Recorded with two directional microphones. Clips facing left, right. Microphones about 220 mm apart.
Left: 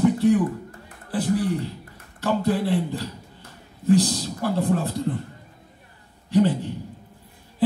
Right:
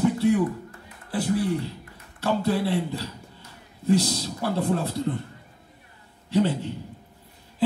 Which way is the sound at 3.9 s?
15° left (ahead or behind).